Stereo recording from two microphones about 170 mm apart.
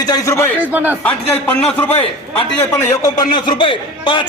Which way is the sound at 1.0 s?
10° left (ahead or behind).